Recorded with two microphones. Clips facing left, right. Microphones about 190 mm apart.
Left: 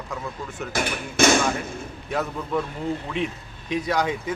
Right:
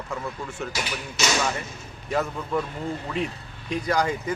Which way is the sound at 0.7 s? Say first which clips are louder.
Left 5 dB; 55° left (ahead or behind).